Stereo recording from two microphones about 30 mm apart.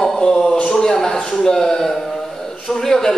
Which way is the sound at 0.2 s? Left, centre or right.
Left.